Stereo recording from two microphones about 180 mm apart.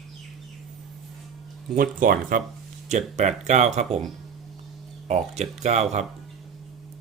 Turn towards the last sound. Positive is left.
turn(degrees=-40)  # may be behind; listen again after turning